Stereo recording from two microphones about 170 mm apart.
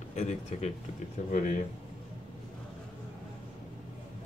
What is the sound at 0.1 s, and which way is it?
Speech, 40° left (ahead or behind).